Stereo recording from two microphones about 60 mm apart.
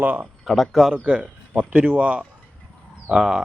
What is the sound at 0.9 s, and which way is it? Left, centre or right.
Speech, right.